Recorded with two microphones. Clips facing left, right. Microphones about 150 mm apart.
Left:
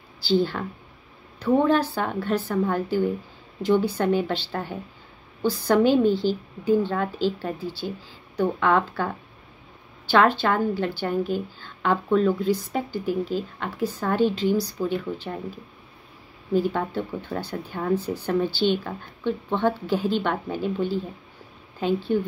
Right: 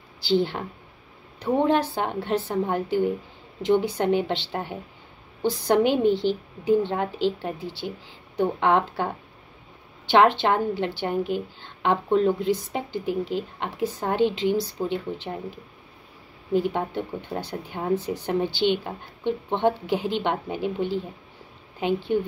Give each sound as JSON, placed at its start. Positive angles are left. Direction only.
{"t": 0.2, "sound": "a woman's voice", "side_deg": -20}
{"t": 16.5, "sound": "a woman's voice", "side_deg": -20}